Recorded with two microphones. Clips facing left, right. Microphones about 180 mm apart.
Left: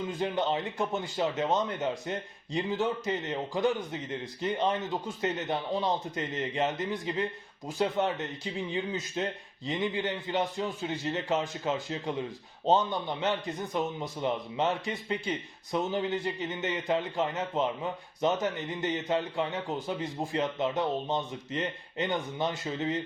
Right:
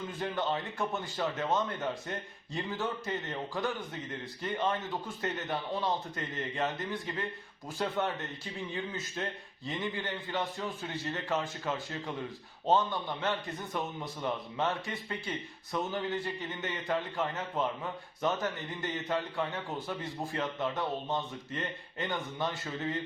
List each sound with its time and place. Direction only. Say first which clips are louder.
0.2 s a man's voice: left 3 dB; 20° left (ahead or behind)